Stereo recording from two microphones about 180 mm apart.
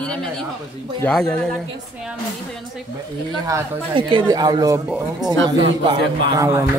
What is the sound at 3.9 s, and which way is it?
A man's voice, 25° right (ahead or behind).